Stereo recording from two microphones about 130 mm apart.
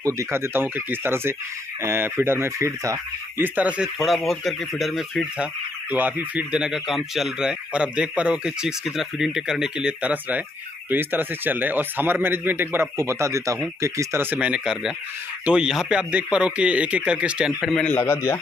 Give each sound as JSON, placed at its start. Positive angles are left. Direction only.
{"t": 0.0, "sound": "speech", "side_deg": -20}
{"t": 5.9, "sound": "speech", "side_deg": -15}
{"t": 17.8, "sound": "a man's voice", "side_deg": 15}